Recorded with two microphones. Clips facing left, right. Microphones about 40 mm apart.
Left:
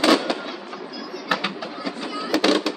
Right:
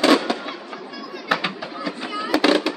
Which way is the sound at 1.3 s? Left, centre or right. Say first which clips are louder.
Right 2 dB; centre.